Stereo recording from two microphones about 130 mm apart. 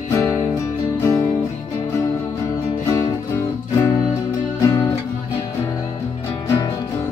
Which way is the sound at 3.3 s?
15° left (ahead or behind).